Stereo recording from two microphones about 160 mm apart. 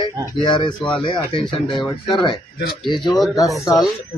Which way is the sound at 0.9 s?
30° left (ahead or behind).